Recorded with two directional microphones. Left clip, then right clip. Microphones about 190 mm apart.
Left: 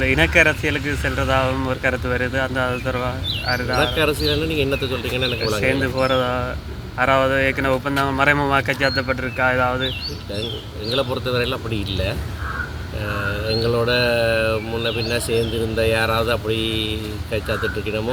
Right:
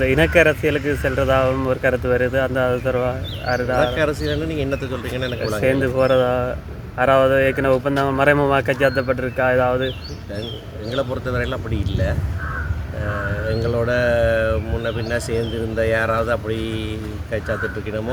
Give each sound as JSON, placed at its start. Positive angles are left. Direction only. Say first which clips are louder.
{"t": 0.0, "sound": "speech", "louder": "right 1 dB", "side_deg": -45}
{"t": 4.3, "sound": "speech", "louder": "left 3 dB", "side_deg": 0}
{"t": 5.6, "sound": "speech", "louder": "right 4 dB", "side_deg": -45}
{"t": 10.9, "sound": "speech", "louder": "left 2 dB", "side_deg": 0}
{"t": 13.5, "sound": "speech", "louder": "left 2 dB", "side_deg": 0}